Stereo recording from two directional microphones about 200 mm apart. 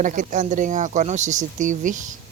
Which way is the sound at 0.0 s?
40° right (ahead or behind).